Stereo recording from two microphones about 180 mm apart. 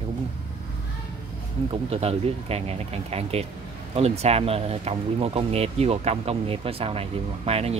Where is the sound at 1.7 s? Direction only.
35° right (ahead or behind).